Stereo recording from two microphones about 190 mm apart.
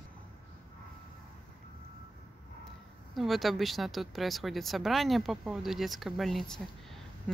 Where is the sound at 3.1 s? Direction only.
Centre (ahead or behind).